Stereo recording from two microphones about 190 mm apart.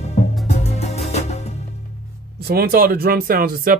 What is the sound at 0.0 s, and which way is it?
Music, 35° left (ahead or behind).